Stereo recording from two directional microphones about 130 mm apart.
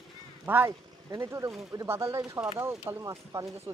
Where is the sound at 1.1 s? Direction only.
25° right (ahead or behind).